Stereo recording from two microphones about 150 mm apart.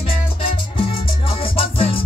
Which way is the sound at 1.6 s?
40° left (ahead or behind).